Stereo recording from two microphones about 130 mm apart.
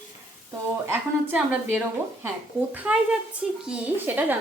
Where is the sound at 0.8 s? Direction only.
15° right (ahead or behind).